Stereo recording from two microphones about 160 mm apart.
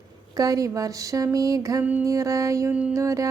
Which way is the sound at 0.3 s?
20° right (ahead or behind).